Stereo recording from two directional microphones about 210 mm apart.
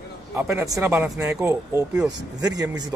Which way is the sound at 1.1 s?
15° right (ahead or behind).